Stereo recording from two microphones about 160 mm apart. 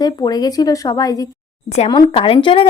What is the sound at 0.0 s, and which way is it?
Speech, 25° left (ahead or behind).